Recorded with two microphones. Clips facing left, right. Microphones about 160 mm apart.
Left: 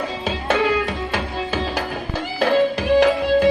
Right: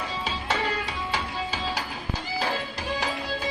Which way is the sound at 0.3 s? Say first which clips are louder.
Left 10 dB; 60° left (ahead or behind).